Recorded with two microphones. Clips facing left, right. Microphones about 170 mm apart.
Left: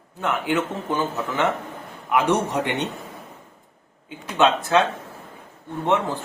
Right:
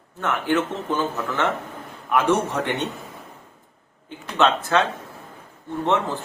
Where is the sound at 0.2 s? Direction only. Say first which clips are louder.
Right 1 dB; 10° left (ahead or behind).